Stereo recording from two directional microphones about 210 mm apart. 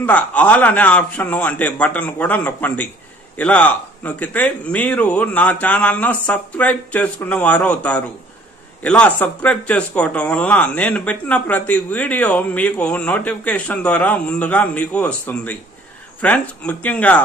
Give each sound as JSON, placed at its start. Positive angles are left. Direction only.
{"t": 0.0, "sound": "speech", "side_deg": 5}